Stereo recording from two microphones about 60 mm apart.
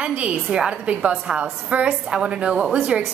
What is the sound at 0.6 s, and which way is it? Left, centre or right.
A woman's voice, centre.